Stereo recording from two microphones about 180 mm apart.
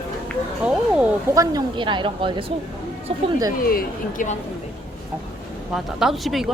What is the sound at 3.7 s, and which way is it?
Speech, 50° left (ahead or behind).